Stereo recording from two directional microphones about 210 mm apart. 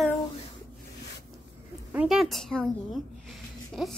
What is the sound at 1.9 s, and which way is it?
Speech, centre (ahead or behind).